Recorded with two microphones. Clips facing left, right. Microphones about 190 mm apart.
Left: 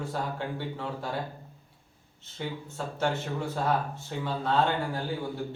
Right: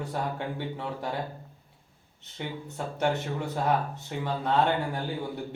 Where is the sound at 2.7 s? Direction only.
15° right (ahead or behind).